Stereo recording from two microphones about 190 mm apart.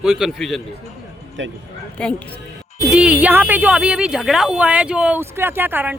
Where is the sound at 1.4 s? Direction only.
80° right.